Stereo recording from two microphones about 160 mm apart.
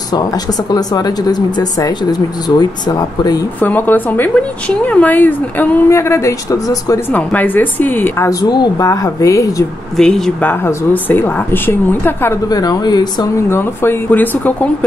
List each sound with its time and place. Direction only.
0.1 s speech: 25° left (ahead or behind)
3.6 s a woman's voice: 10° left (ahead or behind)
9.9 s speech: centre (ahead or behind)
10.5 s a woman's voice: 15° left (ahead or behind)